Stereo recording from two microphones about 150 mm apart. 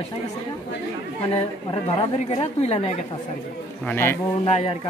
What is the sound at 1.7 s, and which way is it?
Speech, 30° left (ahead or behind).